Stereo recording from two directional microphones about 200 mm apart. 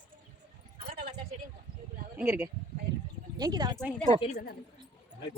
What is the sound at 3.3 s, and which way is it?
Speech, 20° right (ahead or behind).